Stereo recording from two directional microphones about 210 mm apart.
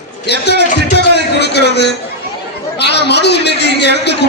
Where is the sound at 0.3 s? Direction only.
50° left (ahead or behind).